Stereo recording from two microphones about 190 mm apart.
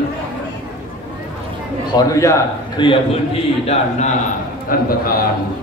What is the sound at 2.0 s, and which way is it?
A man's voice, 15° left (ahead or behind).